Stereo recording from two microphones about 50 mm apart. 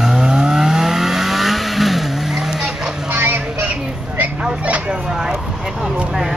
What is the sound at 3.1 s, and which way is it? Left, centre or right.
Vehicle, right.